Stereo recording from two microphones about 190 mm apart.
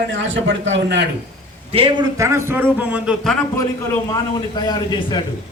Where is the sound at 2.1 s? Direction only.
15° right (ahead or behind).